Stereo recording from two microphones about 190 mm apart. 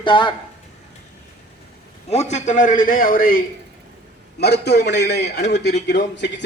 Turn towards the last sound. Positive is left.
turn(degrees=70)  # may be behind; listen again after turning